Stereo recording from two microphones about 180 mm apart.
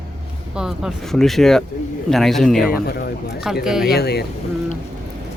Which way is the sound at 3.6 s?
5° right (ahead or behind).